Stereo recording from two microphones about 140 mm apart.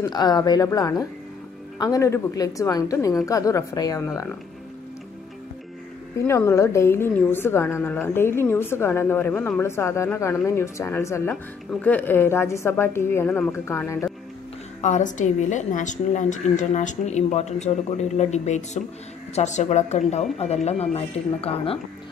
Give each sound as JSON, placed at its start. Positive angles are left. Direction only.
{"t": 0.0, "sound": "a woman's voice", "side_deg": 30}
{"t": 6.2, "sound": "a woman's voice", "side_deg": 20}
{"t": 14.8, "sound": "a woman's voice", "side_deg": 60}